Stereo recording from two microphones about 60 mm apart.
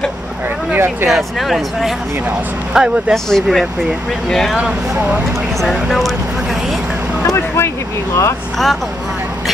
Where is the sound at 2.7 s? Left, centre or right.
Centre.